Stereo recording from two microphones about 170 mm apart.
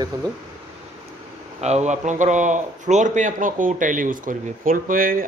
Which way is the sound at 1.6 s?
40° right (ahead or behind).